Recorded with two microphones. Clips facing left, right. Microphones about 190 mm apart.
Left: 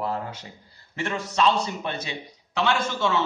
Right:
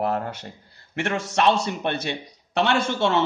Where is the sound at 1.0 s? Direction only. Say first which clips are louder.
Right 2 dB; 80° right.